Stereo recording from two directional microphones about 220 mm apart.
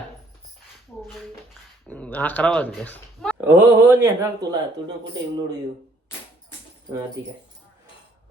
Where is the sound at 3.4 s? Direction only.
10° right (ahead or behind).